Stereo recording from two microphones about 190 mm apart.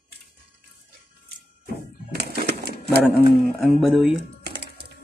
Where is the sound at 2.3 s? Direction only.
55° right (ahead or behind).